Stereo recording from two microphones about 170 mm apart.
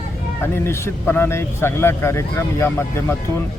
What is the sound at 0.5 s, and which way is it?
A man's voice, 15° left (ahead or behind).